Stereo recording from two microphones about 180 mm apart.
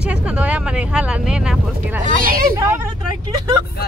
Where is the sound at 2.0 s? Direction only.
50° right (ahead or behind).